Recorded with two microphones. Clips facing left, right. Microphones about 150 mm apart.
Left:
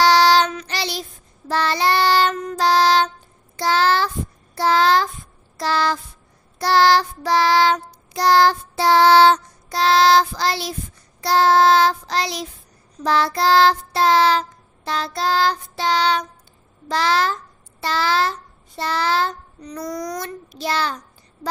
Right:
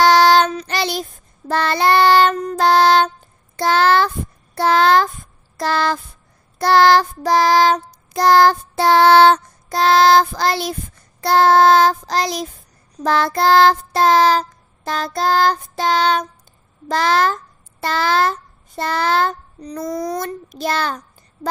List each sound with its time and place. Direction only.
0.0 s child singing: 50° right (ahead or behind)
2.5 s music: 55° right (ahead or behind)
3.5 s child singing: 55° right (ahead or behind)
16.8 s a child's voice: 50° right (ahead or behind)
19.6 s child singing: 30° right (ahead or behind)
20.2 s a child's voice: 50° right (ahead or behind)